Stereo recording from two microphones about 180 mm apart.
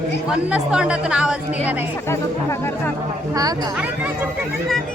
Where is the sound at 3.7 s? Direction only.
10° right (ahead or behind).